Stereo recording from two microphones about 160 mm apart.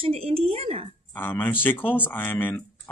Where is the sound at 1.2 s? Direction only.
10° left (ahead or behind).